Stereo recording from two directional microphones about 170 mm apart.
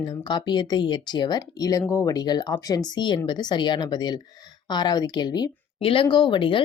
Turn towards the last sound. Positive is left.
turn(degrees=30)  # may be behind; listen again after turning